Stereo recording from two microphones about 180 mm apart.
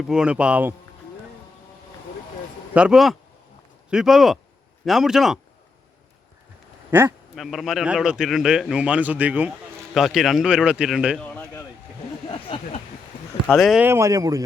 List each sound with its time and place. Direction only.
0.0 s speech: 5° right (ahead or behind)
2.7 s a man's voice: 5° right (ahead or behind)
6.9 s a man's voice: 10° right (ahead or behind); by 11.6 s 5° left (ahead or behind)
12.3 s a sound: 30° left (ahead or behind)
13.5 s a man's voice: centre (ahead or behind)
13.8 s speech: 15° right (ahead or behind)